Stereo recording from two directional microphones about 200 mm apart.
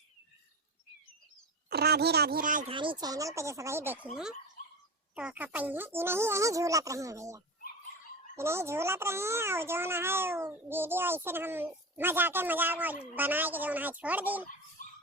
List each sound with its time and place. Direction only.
1.7 s speech: 50° right (ahead or behind)
2.7 s speech: 25° right (ahead or behind)
4.1 s speech: centre (ahead or behind)